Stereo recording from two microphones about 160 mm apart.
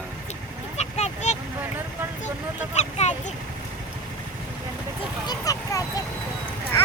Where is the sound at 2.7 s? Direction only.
45° left (ahead or behind).